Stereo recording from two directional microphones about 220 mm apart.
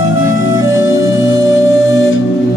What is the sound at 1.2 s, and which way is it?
Music, 60° left (ahead or behind).